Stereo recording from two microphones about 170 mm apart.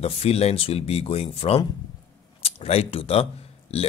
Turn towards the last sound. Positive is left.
turn(degrees=35)  # may be behind; listen again after turning